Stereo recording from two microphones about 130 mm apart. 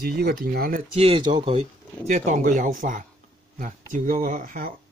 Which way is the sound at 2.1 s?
65° right (ahead or behind).